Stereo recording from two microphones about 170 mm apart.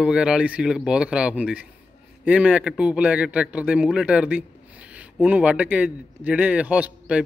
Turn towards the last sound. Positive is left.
turn(degrees=-5)  # may be behind; listen again after turning